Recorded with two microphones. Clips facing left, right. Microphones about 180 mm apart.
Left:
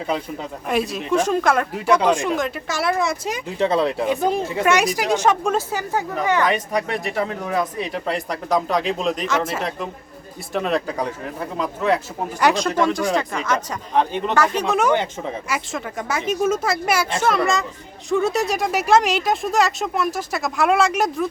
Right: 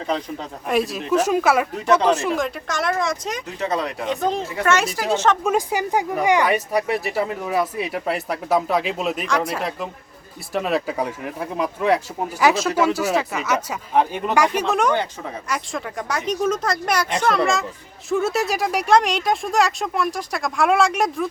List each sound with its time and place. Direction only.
0.1 s speech: 10° left (ahead or behind)
1.7 s speech: 10° left (ahead or behind)
3.6 s speech: 30° left (ahead or behind)
4.0 s speech: 10° left (ahead or behind)
5.4 s speech: 10° right (ahead or behind)
12.4 s speech: 5° right (ahead or behind)
14.7 s speech: 5° left (ahead or behind)